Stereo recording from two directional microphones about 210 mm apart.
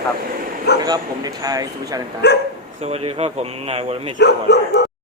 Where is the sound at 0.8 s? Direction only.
20° right (ahead or behind).